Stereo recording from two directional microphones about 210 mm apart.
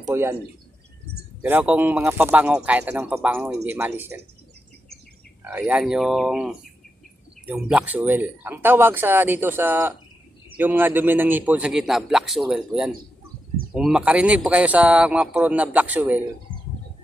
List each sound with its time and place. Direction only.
0.0 s speech: 10° right (ahead or behind)
1.4 s speech: 10° right (ahead or behind)
5.4 s speech: 5° right (ahead or behind)